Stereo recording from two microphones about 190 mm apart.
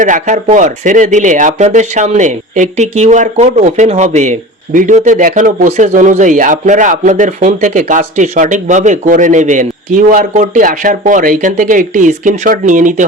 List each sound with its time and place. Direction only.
0.0 s speech: 40° right (ahead or behind)